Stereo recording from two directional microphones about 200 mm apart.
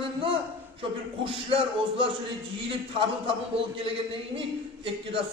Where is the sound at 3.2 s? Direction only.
25° right (ahead or behind).